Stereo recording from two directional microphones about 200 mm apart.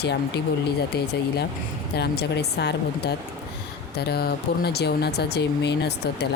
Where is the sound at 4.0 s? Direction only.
55° left (ahead or behind).